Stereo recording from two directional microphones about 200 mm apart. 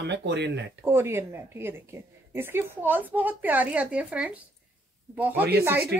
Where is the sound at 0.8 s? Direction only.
10° right (ahead or behind).